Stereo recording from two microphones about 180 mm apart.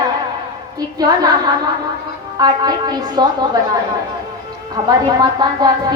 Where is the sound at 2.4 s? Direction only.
20° right (ahead or behind).